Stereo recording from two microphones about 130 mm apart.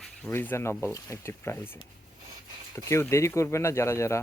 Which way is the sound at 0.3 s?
15° left (ahead or behind).